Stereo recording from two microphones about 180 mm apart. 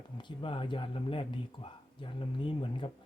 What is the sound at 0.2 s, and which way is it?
Speech, 30° left (ahead or behind).